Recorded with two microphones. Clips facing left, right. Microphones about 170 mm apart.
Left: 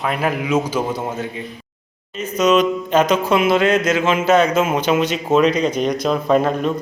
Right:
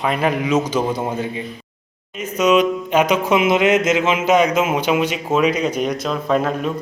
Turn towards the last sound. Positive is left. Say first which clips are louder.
# left 3 dB
turn(degrees=-5)  # may be behind; listen again after turning